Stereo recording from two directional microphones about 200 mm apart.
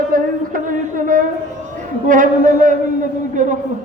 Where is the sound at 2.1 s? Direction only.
40° right (ahead or behind).